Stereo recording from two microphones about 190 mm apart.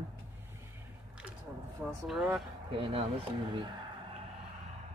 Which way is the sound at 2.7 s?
30° right (ahead or behind).